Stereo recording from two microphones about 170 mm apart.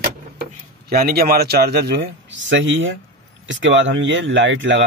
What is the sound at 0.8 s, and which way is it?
A man's voice, 65° right (ahead or behind).